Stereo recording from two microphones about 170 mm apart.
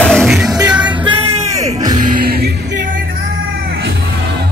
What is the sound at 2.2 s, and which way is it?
Music, 65° right (ahead or behind).